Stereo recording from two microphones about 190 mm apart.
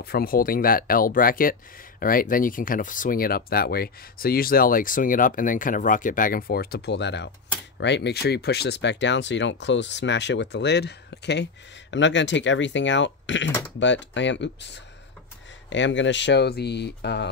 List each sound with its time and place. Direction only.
0.0 s speech: 55° left (ahead or behind)